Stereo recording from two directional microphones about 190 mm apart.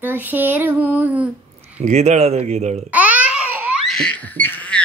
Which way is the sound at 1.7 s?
35° right (ahead or behind).